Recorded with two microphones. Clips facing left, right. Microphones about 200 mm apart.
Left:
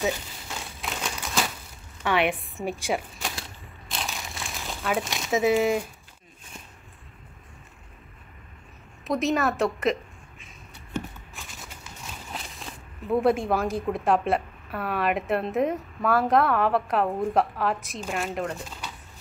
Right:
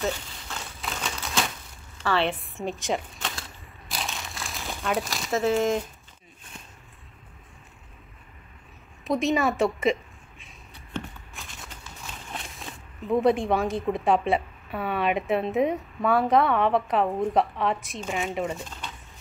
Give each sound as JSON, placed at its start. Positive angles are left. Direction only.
{"t": 0.7, "sound": "crumpling", "side_deg": 5}
{"t": 2.0, "sound": "a woman's voice", "side_deg": 15}
{"t": 2.9, "sound": "a woman's voice", "side_deg": 0}
{"t": 3.3, "sound": "a sound", "side_deg": 0}
{"t": 5.5, "sound": "a woman's voice", "side_deg": 5}
{"t": 9.0, "sound": "a woman's voice", "side_deg": 0}
{"t": 11.3, "sound": "speech", "side_deg": 0}